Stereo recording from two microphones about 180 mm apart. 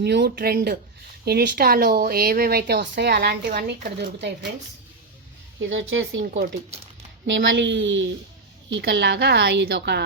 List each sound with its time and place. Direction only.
0.0 s speech: 65° right (ahead or behind)
5.5 s a woman's voice: 90° right
6.3 s speech: 45° right (ahead or behind)
7.3 s a woman's voice: 90° right
8.7 s a woman's voice: 75° right (ahead or behind)